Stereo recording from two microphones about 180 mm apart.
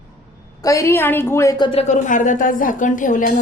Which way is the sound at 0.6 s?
15° left (ahead or behind).